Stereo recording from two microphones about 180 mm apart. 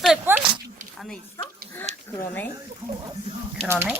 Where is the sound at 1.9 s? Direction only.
40° right (ahead or behind).